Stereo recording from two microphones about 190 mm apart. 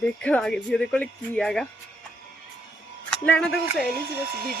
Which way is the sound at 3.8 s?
55° right (ahead or behind).